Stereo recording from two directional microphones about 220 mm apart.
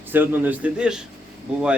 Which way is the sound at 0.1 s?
10° right (ahead or behind).